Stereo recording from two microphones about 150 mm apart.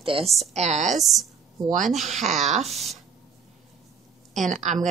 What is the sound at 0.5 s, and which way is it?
Speech, 50° right (ahead or behind).